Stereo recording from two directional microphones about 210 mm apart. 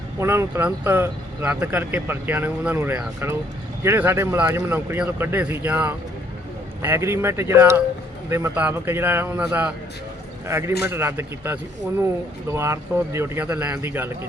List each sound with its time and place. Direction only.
0.2 s speech: 10° right (ahead or behind)